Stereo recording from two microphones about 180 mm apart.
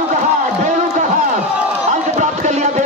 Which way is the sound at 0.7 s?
40° right (ahead or behind).